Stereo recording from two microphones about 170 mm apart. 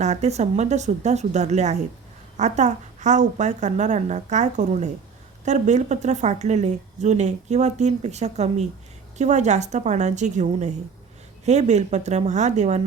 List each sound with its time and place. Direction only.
0.0 s a woman's voice: 40° right (ahead or behind)